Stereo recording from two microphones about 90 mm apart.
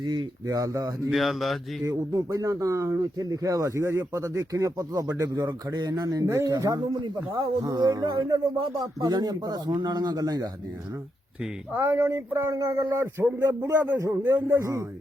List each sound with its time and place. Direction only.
0.0 s speech: 55° right (ahead or behind)
0.4 s speech: 40° right (ahead or behind)
1.1 s speech: centre (ahead or behind)
1.8 s a man's voice: 35° right (ahead or behind)
11.7 s speech: 25° right (ahead or behind)